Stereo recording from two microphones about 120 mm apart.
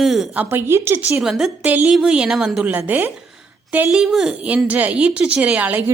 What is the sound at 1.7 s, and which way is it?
Speech, 15° right (ahead or behind).